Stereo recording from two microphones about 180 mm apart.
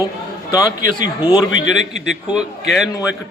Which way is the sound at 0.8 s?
50° right (ahead or behind).